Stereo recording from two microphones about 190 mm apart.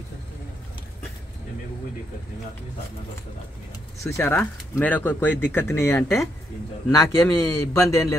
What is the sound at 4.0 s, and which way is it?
Speech, 10° left (ahead or behind).